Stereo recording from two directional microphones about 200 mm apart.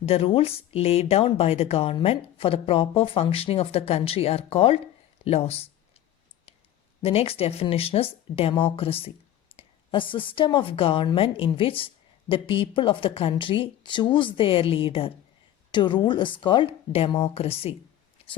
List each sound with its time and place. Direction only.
0.0 s speech: 30° left (ahead or behind)
7.0 s speech: 30° left (ahead or behind)